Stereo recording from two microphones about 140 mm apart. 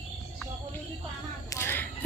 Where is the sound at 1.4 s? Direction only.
20° left (ahead or behind).